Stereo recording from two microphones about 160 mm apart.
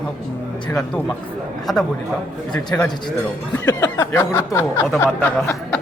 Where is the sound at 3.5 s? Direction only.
15° left (ahead or behind).